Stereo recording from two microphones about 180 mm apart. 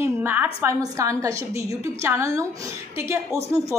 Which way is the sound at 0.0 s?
10° right (ahead or behind).